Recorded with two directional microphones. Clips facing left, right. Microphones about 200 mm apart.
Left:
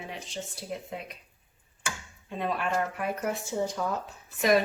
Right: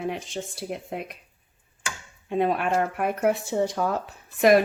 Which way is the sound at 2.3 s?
60° right (ahead or behind).